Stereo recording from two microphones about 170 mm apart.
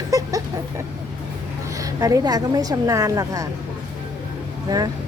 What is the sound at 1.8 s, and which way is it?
Speech, 20° right (ahead or behind).